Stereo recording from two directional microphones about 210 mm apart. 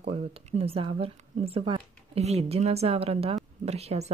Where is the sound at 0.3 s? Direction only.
30° right (ahead or behind).